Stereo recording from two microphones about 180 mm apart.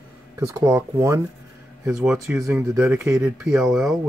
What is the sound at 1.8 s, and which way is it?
Speech, 5° right (ahead or behind).